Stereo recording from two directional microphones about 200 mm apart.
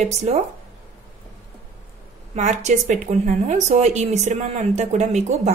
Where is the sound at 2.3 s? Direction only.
35° right (ahead or behind).